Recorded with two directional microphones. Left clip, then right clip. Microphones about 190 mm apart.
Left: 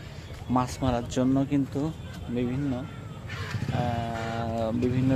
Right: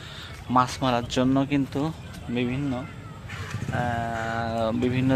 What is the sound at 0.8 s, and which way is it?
Speech, 15° right (ahead or behind).